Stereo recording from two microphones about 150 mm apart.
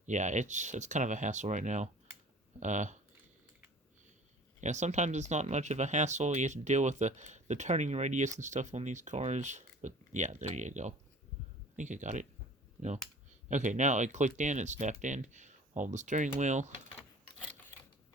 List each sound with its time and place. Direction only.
0.0 s speech: 55° right (ahead or behind)
4.6 s speech: 50° right (ahead or behind)